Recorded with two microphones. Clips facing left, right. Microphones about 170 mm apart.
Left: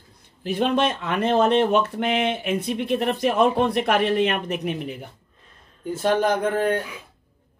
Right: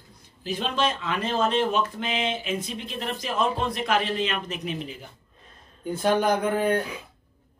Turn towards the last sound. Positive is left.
turn(degrees=0)  # may be behind; listen again after turning